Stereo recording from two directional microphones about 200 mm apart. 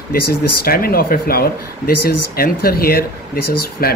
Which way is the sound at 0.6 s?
50° left (ahead or behind).